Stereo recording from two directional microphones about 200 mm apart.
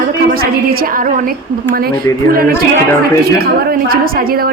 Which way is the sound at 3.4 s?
50° right (ahead or behind).